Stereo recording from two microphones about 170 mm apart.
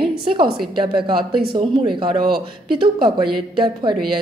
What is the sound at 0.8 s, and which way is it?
Speech, 30° right (ahead or behind).